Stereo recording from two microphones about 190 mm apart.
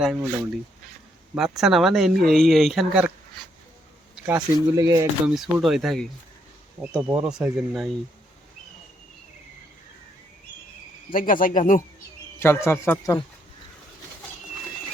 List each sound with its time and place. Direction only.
0.0 s speech: centre (ahead or behind)
4.8 s speech: 15° right (ahead or behind)
5.3 s speech: centre (ahead or behind)
7.1 s speech: 5° right (ahead or behind)
11.1 s speech: 45° left (ahead or behind)
12.4 s speech: 15° left (ahead or behind)